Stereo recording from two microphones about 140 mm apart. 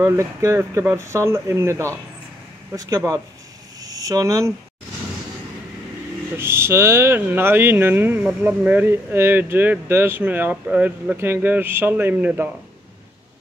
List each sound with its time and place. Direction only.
0.0 s speech: 20° right (ahead or behind)
6.3 s speech: 20° right (ahead or behind)